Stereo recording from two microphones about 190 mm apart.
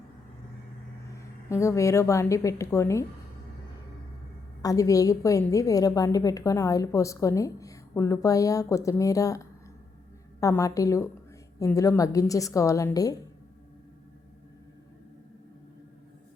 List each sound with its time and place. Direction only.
1.5 s a woman's voice: 15° left (ahead or behind)
4.6 s a woman's voice: 15° left (ahead or behind)